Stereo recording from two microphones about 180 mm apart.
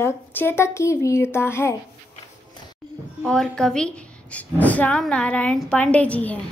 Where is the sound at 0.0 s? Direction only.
10° left (ahead or behind).